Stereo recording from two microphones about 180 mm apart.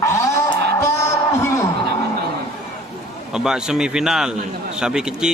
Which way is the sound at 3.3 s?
5° right (ahead or behind).